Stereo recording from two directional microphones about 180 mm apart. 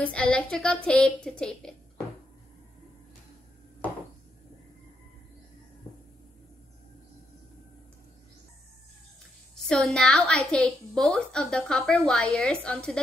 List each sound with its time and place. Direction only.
0.0 s a woman's voice: 5° left (ahead or behind)
9.7 s a woman's voice: 5° left (ahead or behind)